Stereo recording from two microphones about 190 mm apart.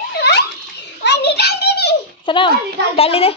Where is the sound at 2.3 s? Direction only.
25° left (ahead or behind).